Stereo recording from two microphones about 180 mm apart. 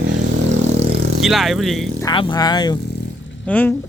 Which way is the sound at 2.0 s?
25° left (ahead or behind).